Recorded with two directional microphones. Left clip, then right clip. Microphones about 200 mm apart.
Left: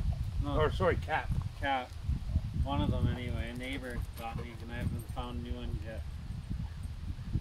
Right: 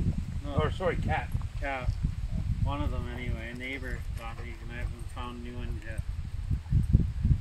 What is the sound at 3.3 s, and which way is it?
Speech, 55° left (ahead or behind).